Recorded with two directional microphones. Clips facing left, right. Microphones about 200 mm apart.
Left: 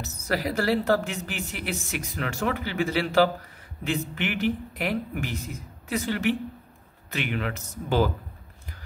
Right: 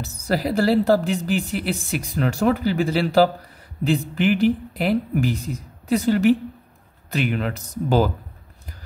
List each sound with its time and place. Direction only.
0.0 s speech: 30° right (ahead or behind)